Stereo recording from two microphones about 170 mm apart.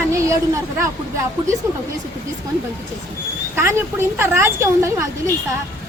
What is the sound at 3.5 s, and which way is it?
A woman's voice, 15° right (ahead or behind).